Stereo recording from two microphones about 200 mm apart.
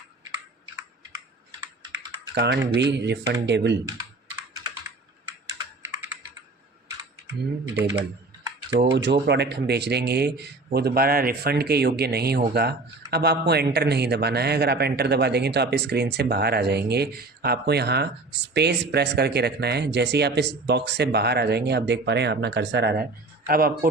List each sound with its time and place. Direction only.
2.3 s speech: 60° right (ahead or behind)
7.8 s speech: 10° right (ahead or behind)
8.8 s speech: 60° right (ahead or behind)
23.5 s speech: 50° right (ahead or behind)